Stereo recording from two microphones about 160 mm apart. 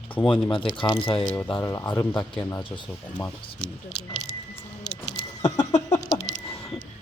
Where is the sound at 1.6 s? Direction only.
20° left (ahead or behind).